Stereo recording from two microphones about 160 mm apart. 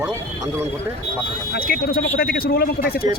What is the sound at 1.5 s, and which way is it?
Speech, 70° left (ahead or behind).